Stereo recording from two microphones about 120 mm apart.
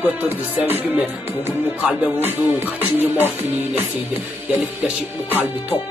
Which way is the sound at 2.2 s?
15° right (ahead or behind).